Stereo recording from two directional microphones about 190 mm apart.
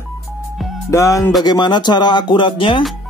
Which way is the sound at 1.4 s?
20° left (ahead or behind).